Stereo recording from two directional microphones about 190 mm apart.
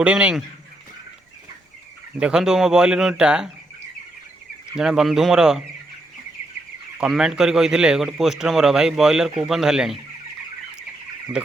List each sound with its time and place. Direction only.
0.0 s a man's voice: 5° right (ahead or behind)
2.1 s a man's voice: 5° right (ahead or behind)
4.8 s a man's voice: 5° right (ahead or behind)
7.0 s a man's voice: 5° right (ahead or behind)